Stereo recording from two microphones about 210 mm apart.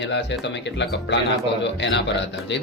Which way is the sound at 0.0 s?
55° left (ahead or behind).